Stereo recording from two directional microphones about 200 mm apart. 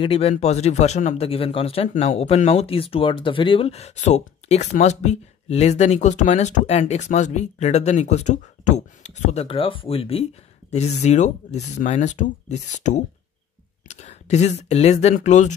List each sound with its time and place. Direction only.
0.0 s speech: 30° left (ahead or behind)